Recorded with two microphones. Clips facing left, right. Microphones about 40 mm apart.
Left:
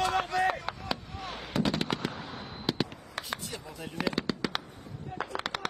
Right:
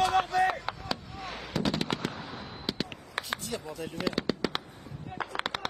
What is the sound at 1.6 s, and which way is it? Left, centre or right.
Fireworks, centre.